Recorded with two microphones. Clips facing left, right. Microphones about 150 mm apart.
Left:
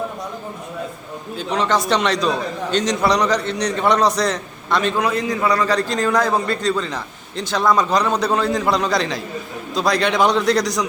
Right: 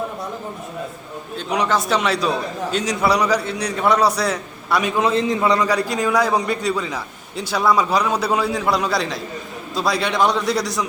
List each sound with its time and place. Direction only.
1.5 s a man's voice: 10° right (ahead or behind)
5.0 s a man's voice: 25° right (ahead or behind); by 10.8 s 5° right (ahead or behind)